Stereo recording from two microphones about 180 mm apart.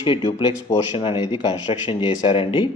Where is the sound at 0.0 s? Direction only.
25° left (ahead or behind).